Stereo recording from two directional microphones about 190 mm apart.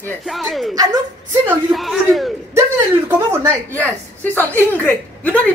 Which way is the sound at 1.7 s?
Centre (ahead or behind).